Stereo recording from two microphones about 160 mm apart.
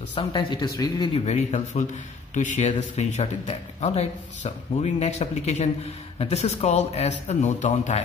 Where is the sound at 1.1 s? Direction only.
45° left (ahead or behind).